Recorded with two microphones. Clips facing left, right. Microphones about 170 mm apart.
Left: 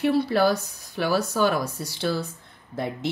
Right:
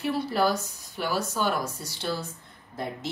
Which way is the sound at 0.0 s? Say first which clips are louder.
Left 5 dB; 65° left (ahead or behind).